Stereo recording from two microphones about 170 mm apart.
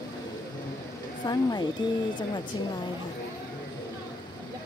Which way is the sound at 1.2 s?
25° left (ahead or behind).